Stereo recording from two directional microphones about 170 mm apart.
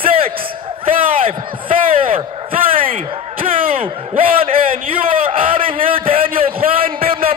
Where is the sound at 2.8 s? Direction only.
55° right (ahead or behind).